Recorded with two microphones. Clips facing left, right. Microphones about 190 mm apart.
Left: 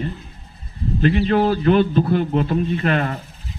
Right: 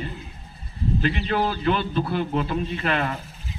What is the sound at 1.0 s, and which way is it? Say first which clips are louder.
Speech: left 9 dB; 50° left (ahead or behind).